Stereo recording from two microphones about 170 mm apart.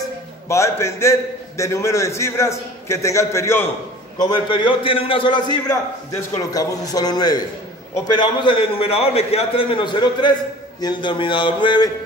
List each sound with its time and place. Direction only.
0.5 s a man's voice: 15° left (ahead or behind)
4.2 s a man's voice: 25° left (ahead or behind)